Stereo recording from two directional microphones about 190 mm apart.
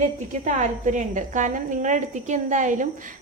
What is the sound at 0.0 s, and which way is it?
A woman's voice, 40° right (ahead or behind).